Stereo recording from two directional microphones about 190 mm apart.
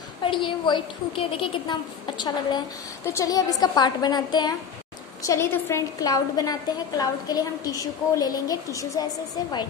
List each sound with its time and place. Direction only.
0.2 s a woman's voice: 25° left (ahead or behind)